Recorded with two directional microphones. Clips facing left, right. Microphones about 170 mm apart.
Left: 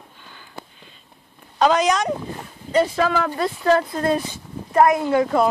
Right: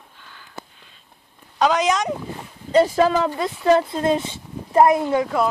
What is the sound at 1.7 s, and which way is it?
Speech, 20° right (ahead or behind).